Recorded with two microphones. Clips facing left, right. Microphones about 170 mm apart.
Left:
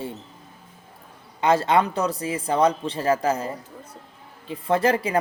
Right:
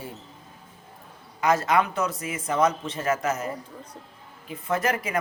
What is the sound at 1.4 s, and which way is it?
Speech, 30° left (ahead or behind).